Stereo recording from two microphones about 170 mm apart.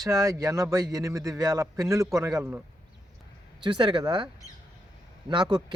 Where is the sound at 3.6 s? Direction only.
30° right (ahead or behind).